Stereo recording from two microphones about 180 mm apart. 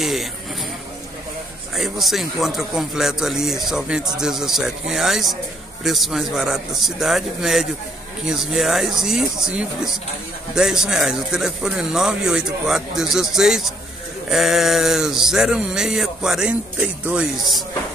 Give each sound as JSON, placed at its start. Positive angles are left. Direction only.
{"t": 0.0, "sound": "a man's voice", "side_deg": 0}
{"t": 1.8, "sound": "a man's voice", "side_deg": 0}